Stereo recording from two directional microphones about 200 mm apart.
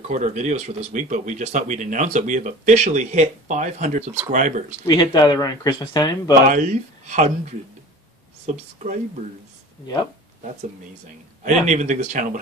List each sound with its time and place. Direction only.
0.1 s speech: 35° right (ahead or behind)
4.8 s speech: 20° left (ahead or behind)
6.4 s speech: 40° right (ahead or behind)
8.5 s speech: 35° right (ahead or behind)
11.4 s speech: 40° right (ahead or behind)